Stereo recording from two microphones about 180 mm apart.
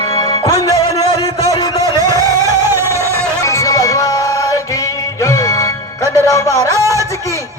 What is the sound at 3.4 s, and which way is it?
Music, 15° left (ahead or behind).